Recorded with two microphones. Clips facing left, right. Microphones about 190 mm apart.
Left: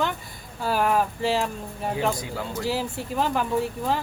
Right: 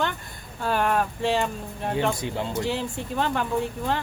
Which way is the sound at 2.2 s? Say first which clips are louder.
Right 3 dB; 25° right (ahead or behind).